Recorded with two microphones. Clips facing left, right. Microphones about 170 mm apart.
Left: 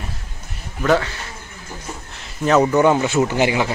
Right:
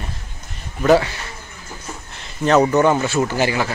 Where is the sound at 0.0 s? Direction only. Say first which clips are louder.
Even; centre (ahead or behind).